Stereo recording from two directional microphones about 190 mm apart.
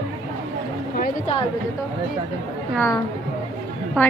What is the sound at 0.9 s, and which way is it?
Speech, 45° left (ahead or behind).